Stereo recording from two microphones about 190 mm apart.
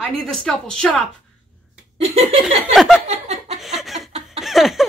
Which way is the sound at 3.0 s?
35° right (ahead or behind).